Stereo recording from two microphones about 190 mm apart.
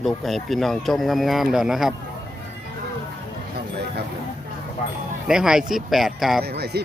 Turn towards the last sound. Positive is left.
turn(degrees=-55)  # may be behind; listen again after turning